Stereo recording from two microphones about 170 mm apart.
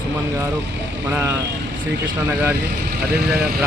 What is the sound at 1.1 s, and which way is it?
Speech, 15° right (ahead or behind).